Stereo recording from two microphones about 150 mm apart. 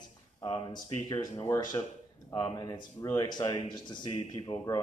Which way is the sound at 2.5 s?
25° left (ahead or behind).